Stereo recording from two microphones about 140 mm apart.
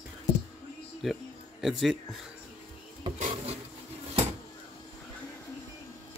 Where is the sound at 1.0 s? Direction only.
Centre (ahead or behind).